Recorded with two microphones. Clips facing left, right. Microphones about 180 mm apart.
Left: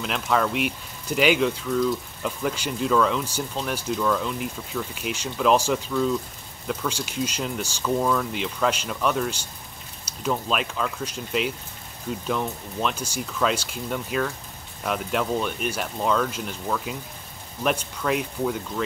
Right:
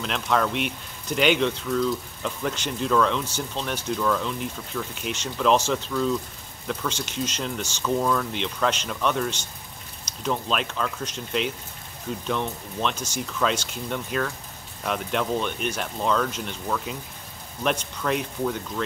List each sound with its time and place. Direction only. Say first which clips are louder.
0.0 s speech: even; centre (ahead or behind)